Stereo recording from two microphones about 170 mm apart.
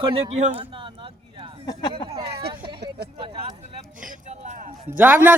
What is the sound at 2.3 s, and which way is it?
Speech, 70° right (ahead or behind).